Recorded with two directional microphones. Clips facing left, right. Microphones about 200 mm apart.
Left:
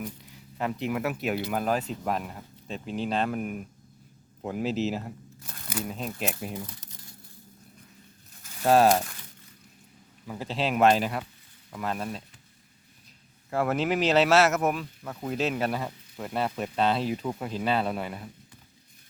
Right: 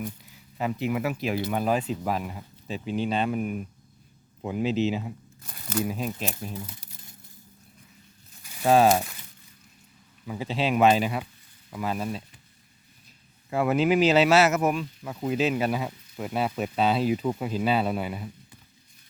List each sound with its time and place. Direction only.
0.6 s speech: centre (ahead or behind)
6.1 s speech: 10° left (ahead or behind)
8.6 s speech: centre (ahead or behind)
10.2 s speech: centre (ahead or behind)
13.5 s speech: centre (ahead or behind)